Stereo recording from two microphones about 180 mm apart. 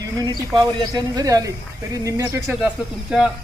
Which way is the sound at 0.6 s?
20° right (ahead or behind).